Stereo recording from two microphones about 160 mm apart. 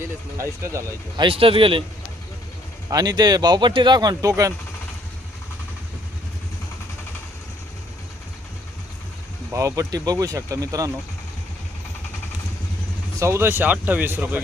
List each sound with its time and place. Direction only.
0.3 s speech: 20° right (ahead or behind)
1.2 s a man's voice: 35° right (ahead or behind)
2.9 s speech: 25° right (ahead or behind)
9.5 s speech: 20° right (ahead or behind)
13.1 s speech: 15° right (ahead or behind)